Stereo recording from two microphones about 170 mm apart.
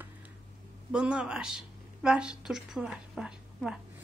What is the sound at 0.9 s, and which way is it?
A woman's voice, 5° right (ahead or behind).